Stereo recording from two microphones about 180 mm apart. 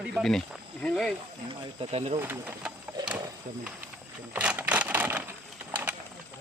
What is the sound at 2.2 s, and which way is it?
Speech, 10° right (ahead or behind).